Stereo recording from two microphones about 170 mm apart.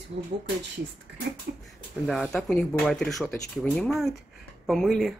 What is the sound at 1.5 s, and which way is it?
Speech, 70° right (ahead or behind).